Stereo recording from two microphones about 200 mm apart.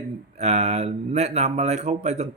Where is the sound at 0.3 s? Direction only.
35° right (ahead or behind).